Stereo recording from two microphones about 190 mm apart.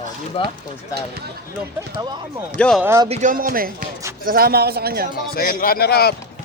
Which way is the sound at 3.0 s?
35° right (ahead or behind).